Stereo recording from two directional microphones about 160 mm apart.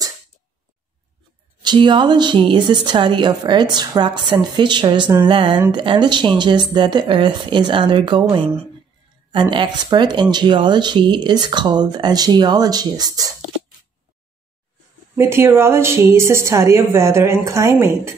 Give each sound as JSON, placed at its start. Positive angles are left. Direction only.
{"t": 1.6, "sound": "a woman's voice", "side_deg": -25}
{"t": 15.1, "sound": "a woman's voice", "side_deg": -15}